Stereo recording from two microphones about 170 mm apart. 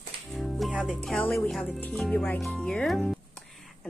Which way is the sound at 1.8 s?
5° left (ahead or behind).